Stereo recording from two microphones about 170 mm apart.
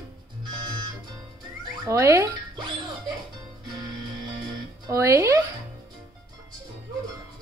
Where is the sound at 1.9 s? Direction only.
15° right (ahead or behind).